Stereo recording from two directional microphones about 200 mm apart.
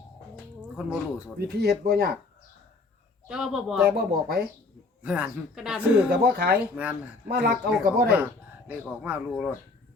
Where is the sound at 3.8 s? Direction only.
50° right (ahead or behind).